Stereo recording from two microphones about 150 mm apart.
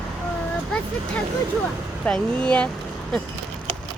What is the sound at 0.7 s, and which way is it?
Speech, 10° left (ahead or behind).